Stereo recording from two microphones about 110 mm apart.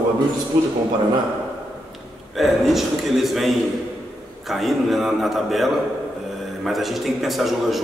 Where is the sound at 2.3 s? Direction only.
Centre (ahead or behind).